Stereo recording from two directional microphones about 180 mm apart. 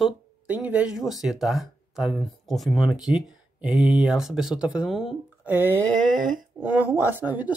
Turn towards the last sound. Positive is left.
turn(degrees=-10)  # may be behind; listen again after turning